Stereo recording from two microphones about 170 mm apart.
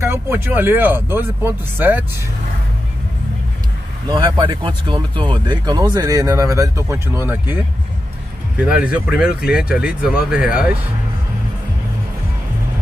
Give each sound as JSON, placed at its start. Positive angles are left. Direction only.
{"t": 0.0, "sound": "speech", "side_deg": -15}
{"t": 4.1, "sound": "speech", "side_deg": -30}